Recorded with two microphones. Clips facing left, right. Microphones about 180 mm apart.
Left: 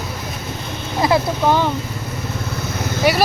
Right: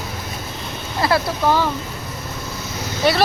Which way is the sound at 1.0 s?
15° left (ahead or behind).